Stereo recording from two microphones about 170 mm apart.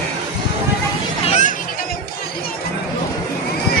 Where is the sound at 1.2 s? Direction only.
45° left (ahead or behind).